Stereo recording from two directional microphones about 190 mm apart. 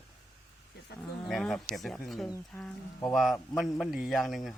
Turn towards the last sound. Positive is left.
turn(degrees=0)  # may be behind; listen again after turning